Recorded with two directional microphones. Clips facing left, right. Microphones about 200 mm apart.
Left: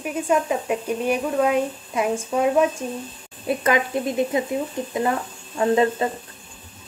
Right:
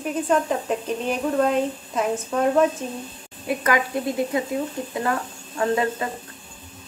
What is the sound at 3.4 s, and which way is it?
Speech, 25° left (ahead or behind).